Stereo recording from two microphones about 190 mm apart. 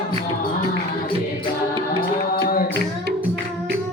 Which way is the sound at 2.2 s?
50° left (ahead or behind).